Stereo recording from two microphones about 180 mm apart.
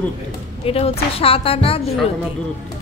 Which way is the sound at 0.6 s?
35° left (ahead or behind).